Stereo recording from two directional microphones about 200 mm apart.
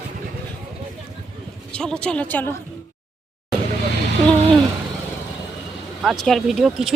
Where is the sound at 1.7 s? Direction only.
5° left (ahead or behind).